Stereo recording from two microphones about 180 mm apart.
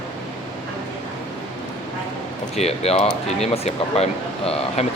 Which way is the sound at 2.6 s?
35° left (ahead or behind).